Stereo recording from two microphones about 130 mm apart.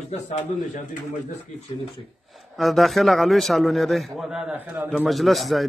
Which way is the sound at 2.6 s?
Centre (ahead or behind).